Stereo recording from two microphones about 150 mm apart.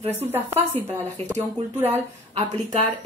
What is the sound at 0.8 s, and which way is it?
Speech, 50° right (ahead or behind).